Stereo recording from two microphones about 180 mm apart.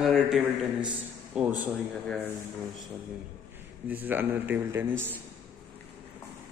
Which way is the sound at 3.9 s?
10° right (ahead or behind).